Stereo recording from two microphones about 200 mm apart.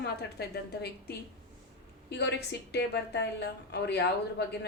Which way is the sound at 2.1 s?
55° left (ahead or behind).